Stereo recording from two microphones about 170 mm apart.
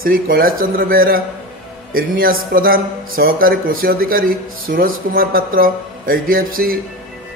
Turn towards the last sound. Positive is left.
turn(degrees=-60)  # may be behind; listen again after turning